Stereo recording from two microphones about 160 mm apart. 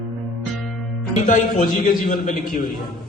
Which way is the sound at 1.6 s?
55° left (ahead or behind).